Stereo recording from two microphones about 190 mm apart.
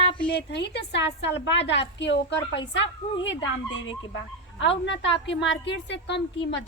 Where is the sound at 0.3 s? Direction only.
65° left (ahead or behind).